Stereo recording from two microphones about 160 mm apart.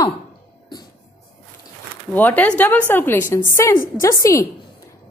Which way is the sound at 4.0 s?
20° left (ahead or behind).